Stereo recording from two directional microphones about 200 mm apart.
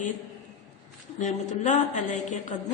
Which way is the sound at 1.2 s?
35° left (ahead or behind).